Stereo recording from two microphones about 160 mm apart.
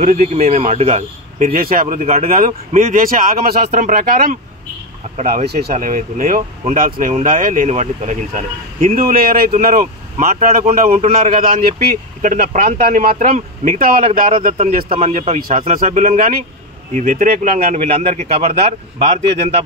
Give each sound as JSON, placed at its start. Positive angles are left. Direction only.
{"t": 0.0, "sound": "speech", "side_deg": -45}
{"t": 5.8, "sound": "speech", "side_deg": -60}
{"t": 12.6, "sound": "speech", "side_deg": -45}
{"t": 13.2, "sound": "speech", "side_deg": -60}
{"t": 14.9, "sound": "speech", "side_deg": -45}